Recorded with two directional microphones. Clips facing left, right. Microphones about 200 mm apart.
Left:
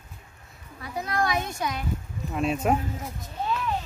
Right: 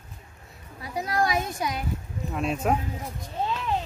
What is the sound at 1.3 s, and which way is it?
A child's voice, centre (ahead or behind).